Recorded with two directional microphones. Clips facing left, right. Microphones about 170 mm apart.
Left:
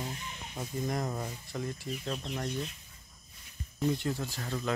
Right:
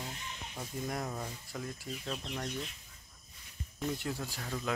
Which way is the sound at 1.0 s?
5° left (ahead or behind).